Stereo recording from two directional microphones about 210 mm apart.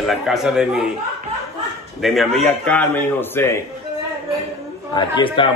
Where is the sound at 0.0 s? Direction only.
Centre (ahead or behind).